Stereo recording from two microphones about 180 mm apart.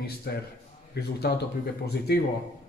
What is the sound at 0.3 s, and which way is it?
Speech, 60° left (ahead or behind).